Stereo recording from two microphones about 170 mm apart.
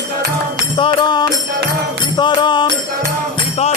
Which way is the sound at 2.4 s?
25° left (ahead or behind).